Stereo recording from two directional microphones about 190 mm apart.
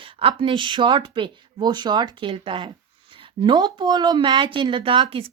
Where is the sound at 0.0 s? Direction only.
30° right (ahead or behind).